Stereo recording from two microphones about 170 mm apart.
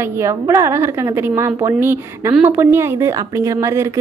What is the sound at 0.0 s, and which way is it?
Speech, 15° right (ahead or behind).